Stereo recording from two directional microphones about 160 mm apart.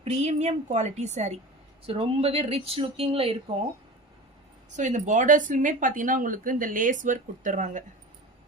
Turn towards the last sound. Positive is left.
turn(degrees=-50)  # may be behind; listen again after turning